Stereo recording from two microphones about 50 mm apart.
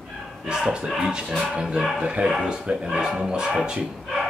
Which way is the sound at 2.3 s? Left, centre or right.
Centre.